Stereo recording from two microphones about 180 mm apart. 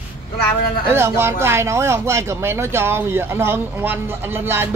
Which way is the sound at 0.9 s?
15° right (ahead or behind).